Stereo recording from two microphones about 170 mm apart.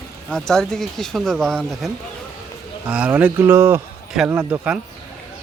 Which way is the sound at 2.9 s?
10° right (ahead or behind).